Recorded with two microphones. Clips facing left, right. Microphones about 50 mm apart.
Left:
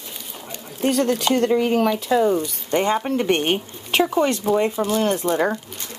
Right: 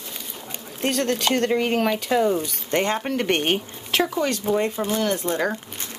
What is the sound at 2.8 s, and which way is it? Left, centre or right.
Speech, centre.